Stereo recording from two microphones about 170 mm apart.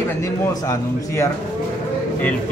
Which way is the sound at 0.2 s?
15° left (ahead or behind).